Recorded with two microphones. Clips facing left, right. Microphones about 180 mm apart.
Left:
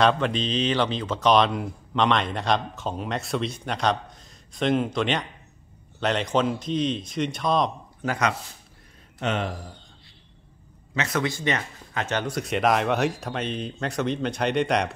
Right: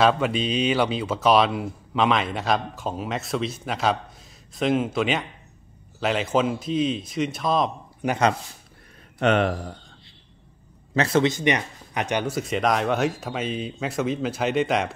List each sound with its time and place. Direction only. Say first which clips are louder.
0.0 s speech: right 1 dB; 5° right (ahead or behind)
8.0 s speech: right 3 dB; 15° right (ahead or behind)
9.2 s speech: right 7 dB; 65° right (ahead or behind)
11.0 s speech: right 6 dB; 30° right (ahead or behind); by 12.4 s 15° right (ahead or behind)
12.4 s speech: left 3 dB; centre (ahead or behind)